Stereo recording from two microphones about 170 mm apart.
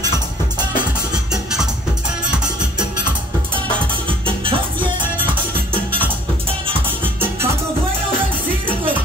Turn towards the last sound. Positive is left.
turn(degrees=-10)  # may be behind; listen again after turning